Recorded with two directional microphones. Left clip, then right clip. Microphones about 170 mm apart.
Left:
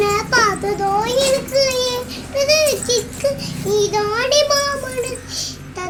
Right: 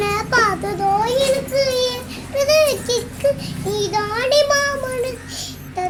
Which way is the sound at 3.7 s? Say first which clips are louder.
Left 3 dB; 15° right (ahead or behind).